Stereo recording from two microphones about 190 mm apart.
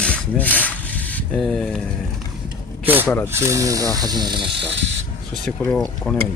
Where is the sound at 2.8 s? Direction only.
10° right (ahead or behind).